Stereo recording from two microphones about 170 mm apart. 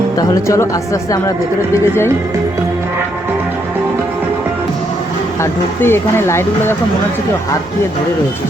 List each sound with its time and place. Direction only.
0.2 s speech: 15° left (ahead or behind)
5.4 s speech: 15° left (ahead or behind)